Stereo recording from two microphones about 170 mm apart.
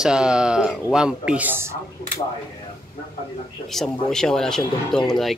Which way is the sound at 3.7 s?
5° left (ahead or behind).